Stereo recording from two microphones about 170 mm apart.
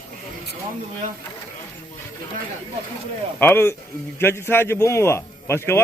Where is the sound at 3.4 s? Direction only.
15° left (ahead or behind).